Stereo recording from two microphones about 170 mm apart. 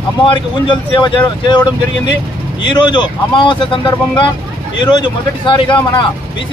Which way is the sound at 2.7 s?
25° left (ahead or behind).